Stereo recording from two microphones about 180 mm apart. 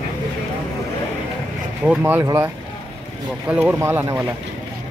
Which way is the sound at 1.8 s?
10° right (ahead or behind).